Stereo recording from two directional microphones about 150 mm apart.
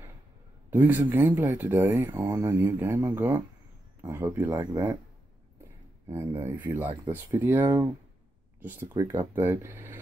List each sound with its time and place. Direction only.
0.8 s speech: 10° right (ahead or behind)
6.0 s speech: 20° right (ahead or behind)